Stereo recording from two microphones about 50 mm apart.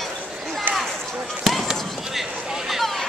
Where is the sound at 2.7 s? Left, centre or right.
Centre.